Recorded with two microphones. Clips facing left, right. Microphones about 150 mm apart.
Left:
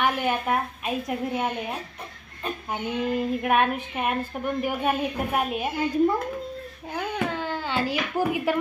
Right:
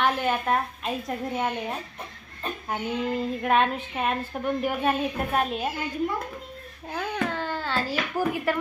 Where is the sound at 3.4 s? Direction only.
10° left (ahead or behind).